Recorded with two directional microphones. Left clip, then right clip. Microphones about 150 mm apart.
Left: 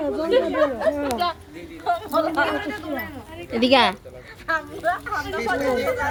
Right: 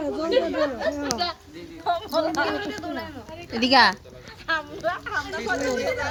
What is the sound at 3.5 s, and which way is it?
Speech, 15° right (ahead or behind).